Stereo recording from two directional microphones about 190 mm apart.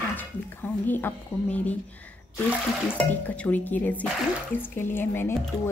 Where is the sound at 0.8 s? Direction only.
10° left (ahead or behind).